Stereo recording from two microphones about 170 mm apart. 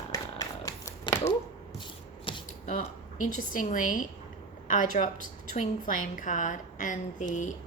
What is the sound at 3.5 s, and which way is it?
A woman's voice, 50° left (ahead or behind).